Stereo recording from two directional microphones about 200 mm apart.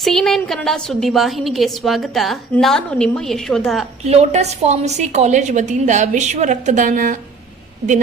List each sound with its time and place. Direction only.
0.0 s a woman's voice: centre (ahead or behind)
4.0 s a woman's voice: 35° right (ahead or behind)